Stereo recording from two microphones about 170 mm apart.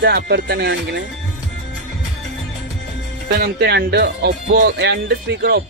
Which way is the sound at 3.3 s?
70° right (ahead or behind).